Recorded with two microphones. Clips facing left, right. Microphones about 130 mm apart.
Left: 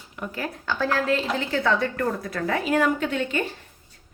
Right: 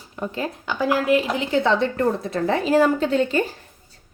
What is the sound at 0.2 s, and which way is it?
A woman's voice, 25° right (ahead or behind).